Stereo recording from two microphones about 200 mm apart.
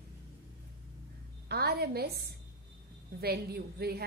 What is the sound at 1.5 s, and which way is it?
Speech, 50° right (ahead or behind).